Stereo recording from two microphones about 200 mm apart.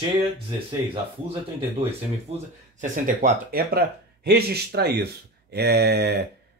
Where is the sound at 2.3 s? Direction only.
30° right (ahead or behind).